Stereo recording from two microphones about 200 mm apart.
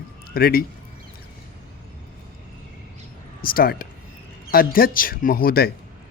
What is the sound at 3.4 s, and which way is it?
A man's voice, 45° left (ahead or behind).